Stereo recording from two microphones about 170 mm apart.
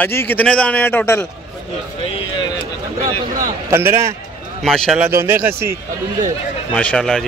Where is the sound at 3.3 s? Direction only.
15° right (ahead or behind).